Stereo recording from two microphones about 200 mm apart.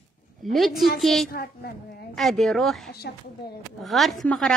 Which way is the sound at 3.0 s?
60° left (ahead or behind).